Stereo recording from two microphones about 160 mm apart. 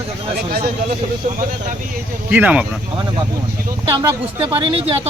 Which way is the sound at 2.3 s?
10° right (ahead or behind).